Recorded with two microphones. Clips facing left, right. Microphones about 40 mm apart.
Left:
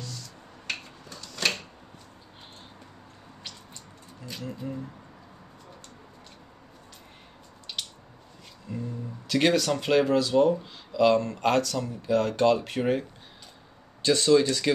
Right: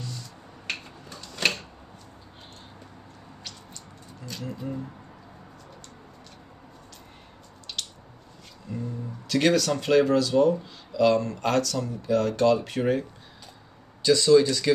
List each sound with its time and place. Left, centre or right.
0.7 s a sound: centre
4.5 s speech: centre
7.7 s squish: centre
8.7 s music: centre
9.3 s speech: left
14.0 s speech: left